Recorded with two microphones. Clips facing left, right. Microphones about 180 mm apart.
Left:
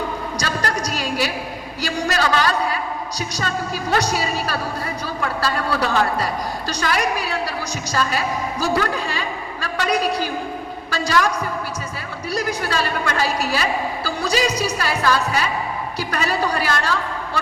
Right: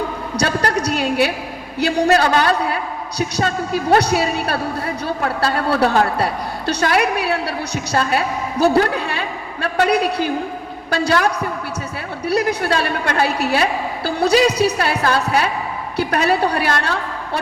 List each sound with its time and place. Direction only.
0.3 s a sound: 60° right (ahead or behind)
1.8 s a woman's voice: 60° right (ahead or behind)
5.8 s a woman's voice: 55° right (ahead or behind)